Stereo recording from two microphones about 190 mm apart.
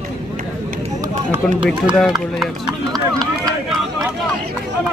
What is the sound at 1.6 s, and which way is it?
Speech, 5° right (ahead or behind).